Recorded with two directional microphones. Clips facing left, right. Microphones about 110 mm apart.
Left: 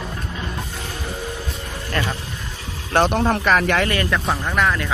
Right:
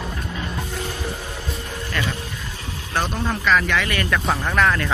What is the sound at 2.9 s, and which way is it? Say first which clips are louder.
Speech: left 7 dB; 70° left (ahead or behind).